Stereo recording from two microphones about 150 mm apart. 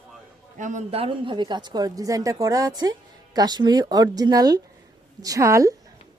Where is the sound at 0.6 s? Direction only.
55° right (ahead or behind).